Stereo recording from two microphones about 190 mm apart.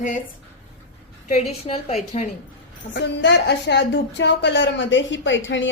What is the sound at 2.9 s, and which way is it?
A woman's voice, 65° left (ahead or behind).